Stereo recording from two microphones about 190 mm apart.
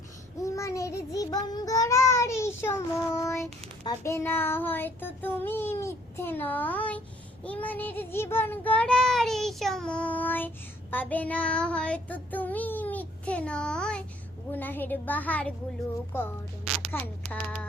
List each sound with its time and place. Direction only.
0.4 s child singing: 15° left (ahead or behind)
16.7 s single-lens reflex camera: 30° right (ahead or behind)